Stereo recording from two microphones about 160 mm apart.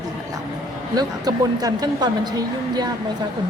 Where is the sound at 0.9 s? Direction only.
25° right (ahead or behind).